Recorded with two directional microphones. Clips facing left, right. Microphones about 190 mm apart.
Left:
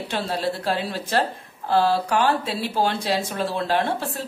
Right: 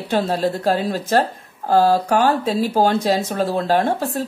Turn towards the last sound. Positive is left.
turn(degrees=-40)  # may be behind; listen again after turning